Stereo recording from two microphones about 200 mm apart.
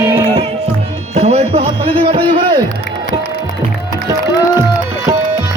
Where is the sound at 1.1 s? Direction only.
30° right (ahead or behind).